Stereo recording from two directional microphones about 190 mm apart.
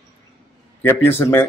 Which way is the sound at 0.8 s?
10° left (ahead or behind).